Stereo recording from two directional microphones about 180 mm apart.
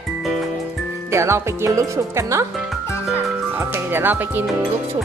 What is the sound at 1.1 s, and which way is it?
Speech, 15° right (ahead or behind).